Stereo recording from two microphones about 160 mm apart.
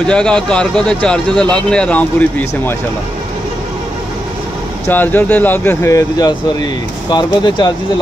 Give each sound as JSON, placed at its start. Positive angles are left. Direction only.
{"t": 0.0, "sound": "speech", "side_deg": 5}
{"t": 4.8, "sound": "speech", "side_deg": 10}